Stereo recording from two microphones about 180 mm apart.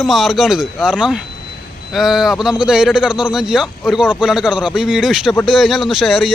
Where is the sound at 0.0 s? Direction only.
Centre (ahead or behind).